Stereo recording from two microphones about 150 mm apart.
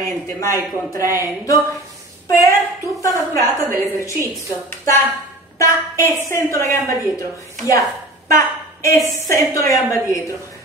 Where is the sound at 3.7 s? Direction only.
15° right (ahead or behind).